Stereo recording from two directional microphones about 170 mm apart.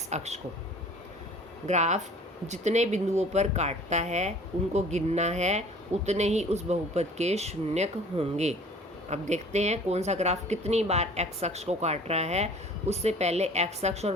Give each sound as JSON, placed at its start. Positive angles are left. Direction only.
{"t": 0.1, "sound": "speech", "side_deg": -40}
{"t": 1.6, "sound": "speech", "side_deg": -45}